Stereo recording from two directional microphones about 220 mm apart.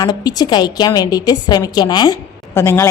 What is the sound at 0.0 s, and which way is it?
A woman's voice, 20° left (ahead or behind).